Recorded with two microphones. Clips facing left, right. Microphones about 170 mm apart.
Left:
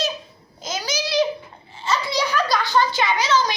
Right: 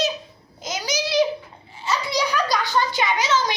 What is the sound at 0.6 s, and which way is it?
Babbling, 20° right (ahead or behind).